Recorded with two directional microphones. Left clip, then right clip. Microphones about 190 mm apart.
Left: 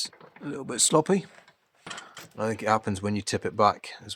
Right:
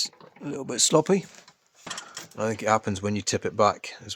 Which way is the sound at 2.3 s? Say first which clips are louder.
Right 1 dB; 10° right (ahead or behind).